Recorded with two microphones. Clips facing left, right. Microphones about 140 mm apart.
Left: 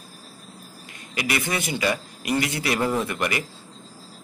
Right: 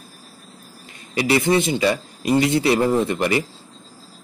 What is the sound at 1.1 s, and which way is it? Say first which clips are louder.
Speech: right 9 dB; 25° right (ahead or behind).